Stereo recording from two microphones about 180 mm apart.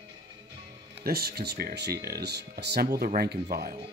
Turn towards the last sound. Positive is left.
turn(degrees=-60)  # may be behind; listen again after turning